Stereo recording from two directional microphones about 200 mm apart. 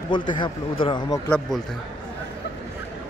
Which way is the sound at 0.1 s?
25° left (ahead or behind).